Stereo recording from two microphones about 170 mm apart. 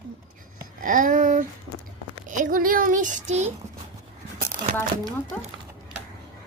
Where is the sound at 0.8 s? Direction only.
50° right (ahead or behind).